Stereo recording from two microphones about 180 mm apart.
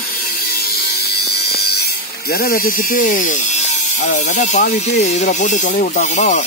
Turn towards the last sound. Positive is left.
turn(degrees=45)  # may be behind; listen again after turning